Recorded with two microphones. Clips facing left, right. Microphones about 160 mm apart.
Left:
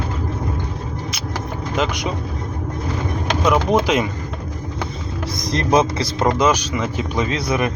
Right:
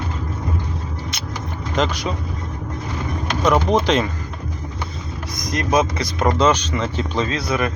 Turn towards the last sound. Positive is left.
turn(degrees=20)  # may be behind; listen again after turning